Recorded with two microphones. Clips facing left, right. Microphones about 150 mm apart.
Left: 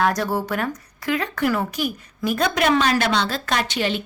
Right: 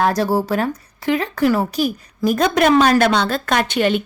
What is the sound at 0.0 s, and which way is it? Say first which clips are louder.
Speech: right 4 dB; 30° right (ahead or behind).